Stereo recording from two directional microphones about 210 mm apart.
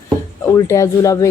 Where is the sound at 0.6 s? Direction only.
15° left (ahead or behind).